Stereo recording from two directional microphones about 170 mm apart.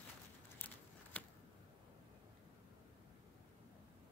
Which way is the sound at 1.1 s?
10° left (ahead or behind).